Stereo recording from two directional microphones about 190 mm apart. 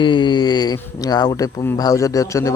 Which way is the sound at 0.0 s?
25° left (ahead or behind).